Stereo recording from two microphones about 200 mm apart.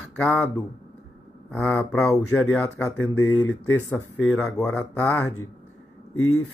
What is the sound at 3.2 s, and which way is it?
Speech, 10° left (ahead or behind).